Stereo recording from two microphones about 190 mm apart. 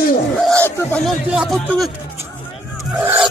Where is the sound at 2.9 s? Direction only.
10° right (ahead or behind).